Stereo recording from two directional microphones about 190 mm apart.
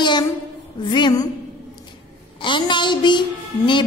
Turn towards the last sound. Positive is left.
turn(degrees=25)  # may be behind; listen again after turning